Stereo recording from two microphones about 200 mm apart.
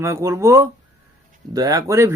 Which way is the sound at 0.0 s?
15° right (ahead or behind).